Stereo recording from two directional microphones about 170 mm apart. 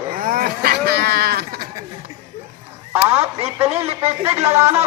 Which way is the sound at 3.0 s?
15° right (ahead or behind).